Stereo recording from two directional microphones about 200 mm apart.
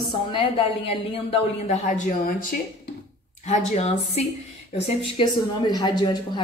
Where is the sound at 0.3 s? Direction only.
25° left (ahead or behind).